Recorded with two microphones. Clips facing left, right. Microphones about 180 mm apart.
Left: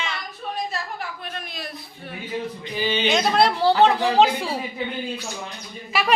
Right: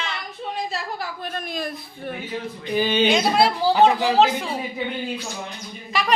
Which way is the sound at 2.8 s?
50° right (ahead or behind).